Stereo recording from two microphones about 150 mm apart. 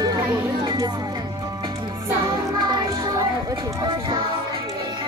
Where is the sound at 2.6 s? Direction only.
30° right (ahead or behind).